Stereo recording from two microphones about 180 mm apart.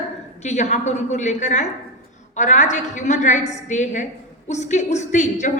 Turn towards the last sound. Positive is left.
turn(degrees=40)  # may be behind; listen again after turning